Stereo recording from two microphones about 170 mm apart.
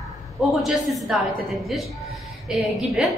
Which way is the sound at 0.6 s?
Centre (ahead or behind).